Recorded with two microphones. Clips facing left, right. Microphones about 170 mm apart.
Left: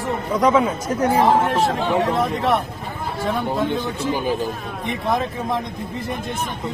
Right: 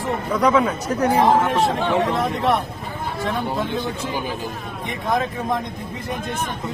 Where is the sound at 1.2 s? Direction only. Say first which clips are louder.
Even; centre (ahead or behind).